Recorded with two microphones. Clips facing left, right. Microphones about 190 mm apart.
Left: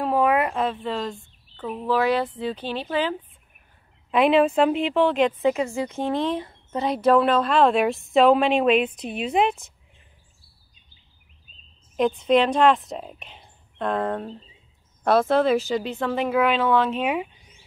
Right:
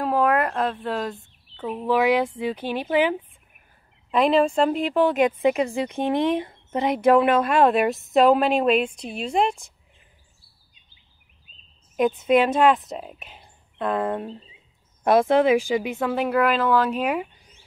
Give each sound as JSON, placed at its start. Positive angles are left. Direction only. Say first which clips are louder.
{"t": 0.0, "sound": "a sound", "louder": "even", "side_deg": 5}
{"t": 1.6, "sound": "speech", "louder": "right 1 dB", "side_deg": -10}
{"t": 4.1, "sound": "speech", "louder": "left 1 dB", "side_deg": 5}
{"t": 12.0, "sound": "a woman's voice", "louder": "even", "side_deg": -5}